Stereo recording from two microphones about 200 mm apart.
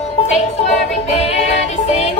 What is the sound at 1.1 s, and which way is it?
Music, 35° left (ahead or behind).